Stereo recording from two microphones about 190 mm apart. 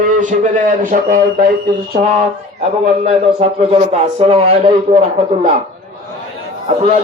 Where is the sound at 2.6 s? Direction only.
35° right (ahead or behind).